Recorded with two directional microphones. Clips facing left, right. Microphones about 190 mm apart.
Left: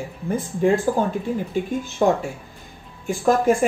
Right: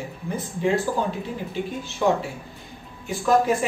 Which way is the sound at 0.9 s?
50° left (ahead or behind).